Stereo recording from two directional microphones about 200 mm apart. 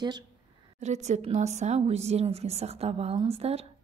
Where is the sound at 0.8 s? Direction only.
35° right (ahead or behind).